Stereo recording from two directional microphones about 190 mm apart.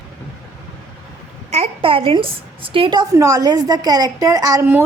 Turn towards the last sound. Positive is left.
turn(degrees=-15)  # may be behind; listen again after turning